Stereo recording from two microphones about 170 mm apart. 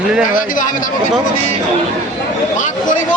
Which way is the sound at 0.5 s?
50° left (ahead or behind).